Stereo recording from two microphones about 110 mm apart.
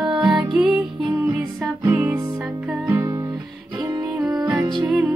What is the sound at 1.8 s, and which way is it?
Music, 15° right (ahead or behind).